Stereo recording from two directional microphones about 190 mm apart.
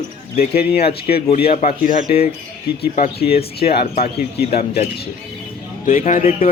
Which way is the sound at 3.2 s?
30° left (ahead or behind).